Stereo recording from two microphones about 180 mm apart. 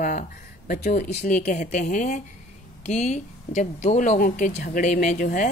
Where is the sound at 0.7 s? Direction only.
45° left (ahead or behind).